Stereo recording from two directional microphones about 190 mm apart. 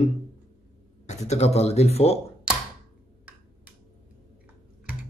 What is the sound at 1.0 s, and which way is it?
Speech, 35° left (ahead or behind).